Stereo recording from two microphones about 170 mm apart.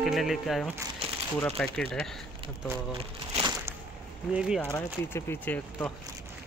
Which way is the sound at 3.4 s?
20° right (ahead or behind).